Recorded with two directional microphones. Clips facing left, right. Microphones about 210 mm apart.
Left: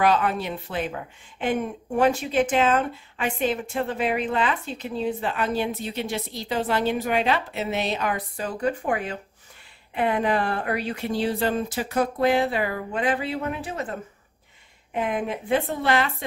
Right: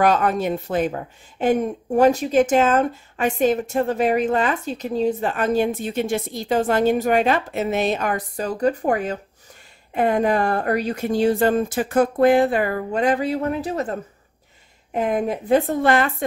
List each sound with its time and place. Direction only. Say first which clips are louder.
0.0 s a woman's voice: right 4 dB; 45° right (ahead or behind)